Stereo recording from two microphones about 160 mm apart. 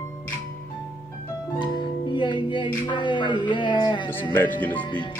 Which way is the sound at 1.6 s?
30° left (ahead or behind).